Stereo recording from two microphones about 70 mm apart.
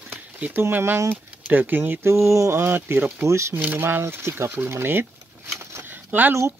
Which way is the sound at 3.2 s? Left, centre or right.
Right.